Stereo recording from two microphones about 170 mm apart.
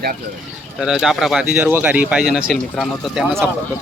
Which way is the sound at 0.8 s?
5° right (ahead or behind).